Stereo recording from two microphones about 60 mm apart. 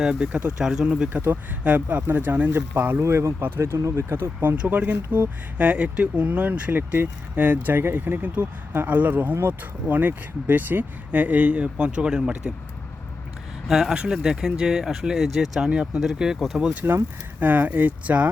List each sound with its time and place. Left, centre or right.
0.0 s speech: centre
0.6 s speech: centre
1.1 s speech: right
3.0 s speech: right
3.4 s speech: right
5.5 s speech: right
13.7 s speech: centre
15.7 s speech: centre
17.4 s speech: right